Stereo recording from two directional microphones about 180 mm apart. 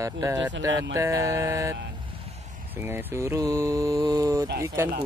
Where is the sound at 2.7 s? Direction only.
10° right (ahead or behind).